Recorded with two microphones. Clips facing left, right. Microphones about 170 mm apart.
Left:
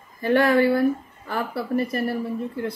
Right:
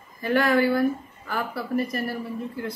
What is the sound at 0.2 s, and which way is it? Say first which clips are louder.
Speech: left 3 dB; 30° left (ahead or behind).